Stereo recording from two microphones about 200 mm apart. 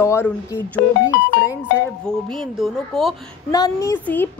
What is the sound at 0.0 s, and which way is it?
Speech, 10° left (ahead or behind).